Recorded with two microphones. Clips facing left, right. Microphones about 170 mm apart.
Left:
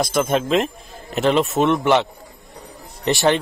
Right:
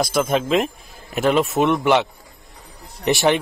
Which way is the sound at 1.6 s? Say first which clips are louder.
Left 1 dB; 10° right (ahead or behind).